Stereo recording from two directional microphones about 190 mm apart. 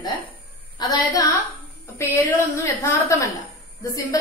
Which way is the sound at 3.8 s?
15° left (ahead or behind).